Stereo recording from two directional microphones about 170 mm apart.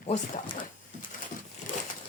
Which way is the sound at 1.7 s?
30° left (ahead or behind).